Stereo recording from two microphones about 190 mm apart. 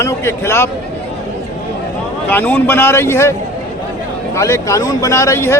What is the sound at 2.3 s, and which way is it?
Speech, 10° left (ahead or behind).